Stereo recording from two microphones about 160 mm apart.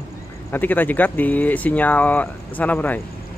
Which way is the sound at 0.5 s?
10° left (ahead or behind).